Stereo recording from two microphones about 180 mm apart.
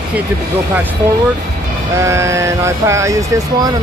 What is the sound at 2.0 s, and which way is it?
Speech, 15° right (ahead or behind).